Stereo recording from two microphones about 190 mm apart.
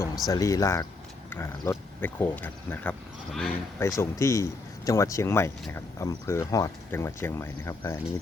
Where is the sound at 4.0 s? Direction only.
15° left (ahead or behind).